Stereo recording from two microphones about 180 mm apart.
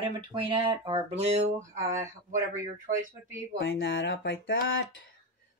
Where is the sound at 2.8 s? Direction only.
50° right (ahead or behind).